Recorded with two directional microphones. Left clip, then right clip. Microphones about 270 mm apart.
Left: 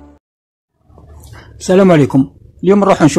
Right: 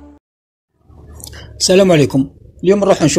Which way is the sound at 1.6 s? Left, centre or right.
Centre.